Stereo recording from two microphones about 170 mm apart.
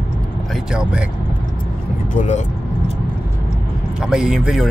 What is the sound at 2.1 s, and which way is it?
Speech, 45° left (ahead or behind).